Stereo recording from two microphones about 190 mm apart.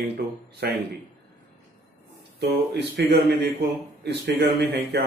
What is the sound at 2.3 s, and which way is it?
Speech, 60° right (ahead or behind).